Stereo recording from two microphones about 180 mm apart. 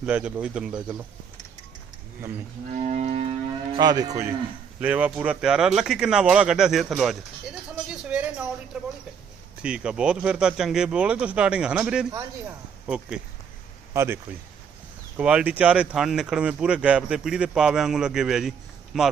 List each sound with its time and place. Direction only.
0.0 s speech: 5° right (ahead or behind)
2.7 s livestock: 35° right (ahead or behind)
3.7 s speech: 20° right (ahead or behind)
4.8 s speech: 5° right (ahead or behind)
13.9 s speech: 15° right (ahead or behind)
15.2 s speech: 5° right (ahead or behind)